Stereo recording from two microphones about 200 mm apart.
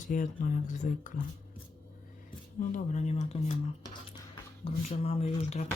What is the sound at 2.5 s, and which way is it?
Speech, 40° left (ahead or behind).